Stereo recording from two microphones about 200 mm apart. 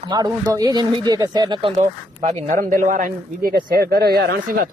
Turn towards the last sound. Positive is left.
turn(degrees=-50)  # may be behind; listen again after turning